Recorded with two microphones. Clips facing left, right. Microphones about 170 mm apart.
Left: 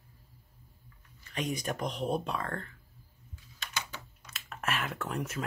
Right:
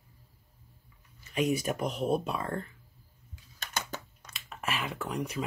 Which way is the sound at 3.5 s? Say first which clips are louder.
Right 3 dB; 45° right (ahead or behind).